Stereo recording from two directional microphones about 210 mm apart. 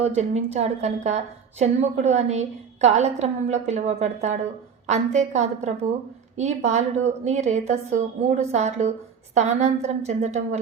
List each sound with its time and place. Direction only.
0.0 s a woman's voice: 30° right (ahead or behind)